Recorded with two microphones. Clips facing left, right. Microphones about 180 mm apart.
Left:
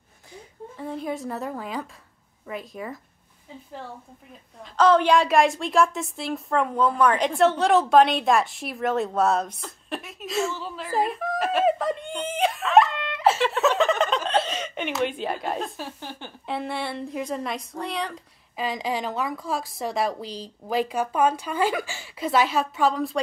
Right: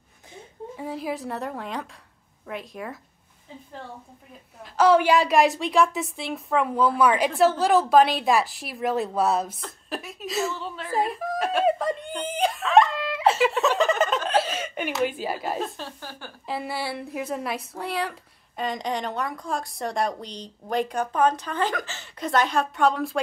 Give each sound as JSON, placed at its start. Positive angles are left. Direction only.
{"t": 0.8, "sound": "a woman's voice", "side_deg": -5}
{"t": 4.6, "sound": "a woman's voice", "side_deg": -10}
{"t": 15.8, "sound": "speech", "side_deg": 20}
{"t": 16.4, "sound": "a woman's voice", "side_deg": -5}